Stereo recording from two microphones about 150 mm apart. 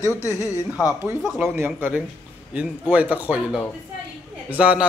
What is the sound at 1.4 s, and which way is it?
A man's voice, 15° right (ahead or behind).